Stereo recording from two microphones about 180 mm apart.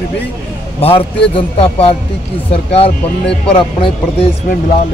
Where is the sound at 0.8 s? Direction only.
35° left (ahead or behind).